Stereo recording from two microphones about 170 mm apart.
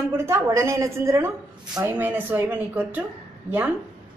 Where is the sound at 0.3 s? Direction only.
15° right (ahead or behind).